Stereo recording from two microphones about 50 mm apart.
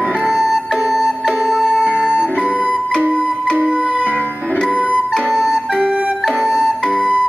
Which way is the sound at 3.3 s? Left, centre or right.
Centre.